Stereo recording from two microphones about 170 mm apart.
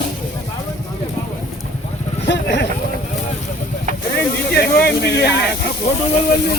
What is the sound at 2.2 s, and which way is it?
Vehicle, 90° left.